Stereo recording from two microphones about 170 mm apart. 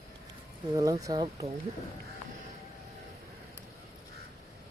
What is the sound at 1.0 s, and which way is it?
Speech, 20° right (ahead or behind).